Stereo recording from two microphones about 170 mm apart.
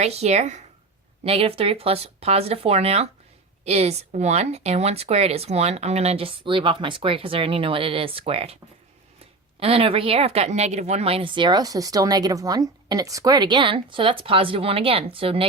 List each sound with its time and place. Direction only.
0.0 s a woman's voice: 40° right (ahead or behind)
9.6 s a woman's voice: 35° right (ahead or behind)